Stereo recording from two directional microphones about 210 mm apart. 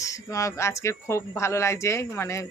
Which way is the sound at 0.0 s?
15° left (ahead or behind).